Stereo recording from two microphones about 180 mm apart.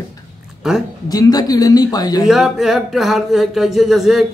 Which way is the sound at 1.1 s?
20° left (ahead or behind).